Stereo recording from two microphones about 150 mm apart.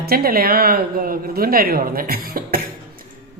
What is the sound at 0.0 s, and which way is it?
A man's voice, 90° right.